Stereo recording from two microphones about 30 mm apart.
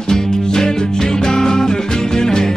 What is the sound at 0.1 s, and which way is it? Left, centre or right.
Music, centre.